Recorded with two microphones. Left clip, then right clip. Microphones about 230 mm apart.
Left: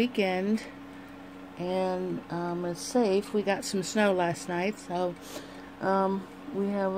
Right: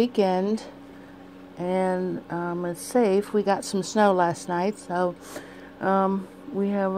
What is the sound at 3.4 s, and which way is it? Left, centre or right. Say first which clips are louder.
Speech: right 5 dB; centre.